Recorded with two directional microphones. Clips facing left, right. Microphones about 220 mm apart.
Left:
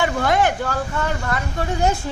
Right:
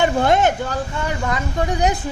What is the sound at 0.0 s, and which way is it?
A man's voice, 25° right (ahead or behind).